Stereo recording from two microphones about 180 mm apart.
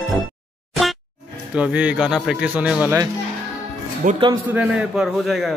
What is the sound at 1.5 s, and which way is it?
A man's voice, 5° right (ahead or behind).